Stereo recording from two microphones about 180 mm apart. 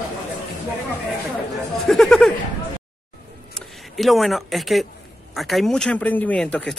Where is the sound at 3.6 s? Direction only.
Centre (ahead or behind).